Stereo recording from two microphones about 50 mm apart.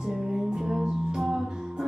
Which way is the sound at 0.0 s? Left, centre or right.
Centre.